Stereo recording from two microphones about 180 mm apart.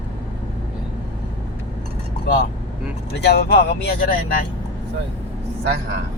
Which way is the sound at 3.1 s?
65° left (ahead or behind).